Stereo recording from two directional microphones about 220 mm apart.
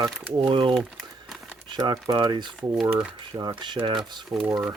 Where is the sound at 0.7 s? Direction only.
Centre (ahead or behind).